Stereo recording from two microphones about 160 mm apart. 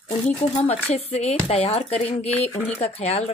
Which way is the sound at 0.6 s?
40° left (ahead or behind).